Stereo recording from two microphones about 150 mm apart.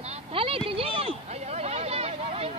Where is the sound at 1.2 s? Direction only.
45° right (ahead or behind).